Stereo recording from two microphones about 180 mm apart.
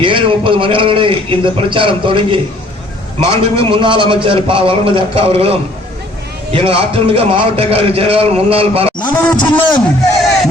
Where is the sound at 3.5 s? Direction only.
30° right (ahead or behind).